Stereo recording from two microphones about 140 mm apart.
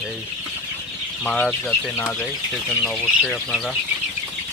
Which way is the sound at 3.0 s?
5° right (ahead or behind).